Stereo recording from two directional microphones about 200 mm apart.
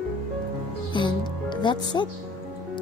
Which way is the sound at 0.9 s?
25° left (ahead or behind).